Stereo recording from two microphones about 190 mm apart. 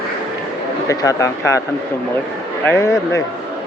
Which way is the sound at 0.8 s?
15° left (ahead or behind).